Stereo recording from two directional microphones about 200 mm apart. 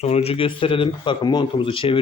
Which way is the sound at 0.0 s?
30° left (ahead or behind).